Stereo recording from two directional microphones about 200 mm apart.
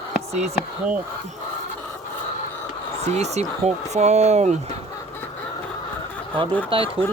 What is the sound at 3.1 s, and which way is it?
Speech, 35° right (ahead or behind).